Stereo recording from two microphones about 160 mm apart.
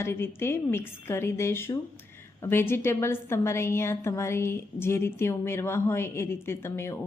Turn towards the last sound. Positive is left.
turn(degrees=15)  # may be behind; listen again after turning